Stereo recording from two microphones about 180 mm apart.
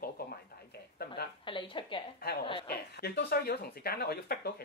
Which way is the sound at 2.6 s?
65° left (ahead or behind).